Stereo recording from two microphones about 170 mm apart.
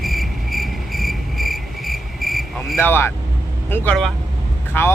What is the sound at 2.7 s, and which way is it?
Speech, 15° left (ahead or behind).